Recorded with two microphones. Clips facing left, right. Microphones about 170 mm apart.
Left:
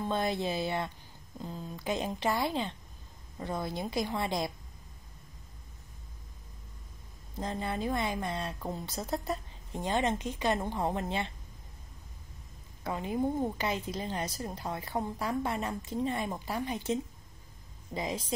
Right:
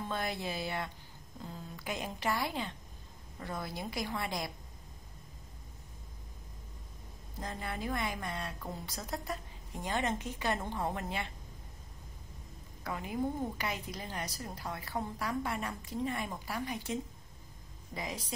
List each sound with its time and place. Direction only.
0.1 s a woman's voice: 25° left (ahead or behind)
7.3 s a woman's voice: 25° left (ahead or behind)
12.8 s a woman's voice: 25° left (ahead or behind)